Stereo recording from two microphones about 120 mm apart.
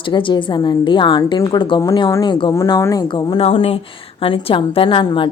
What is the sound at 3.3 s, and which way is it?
A woman's voice, 50° left (ahead or behind).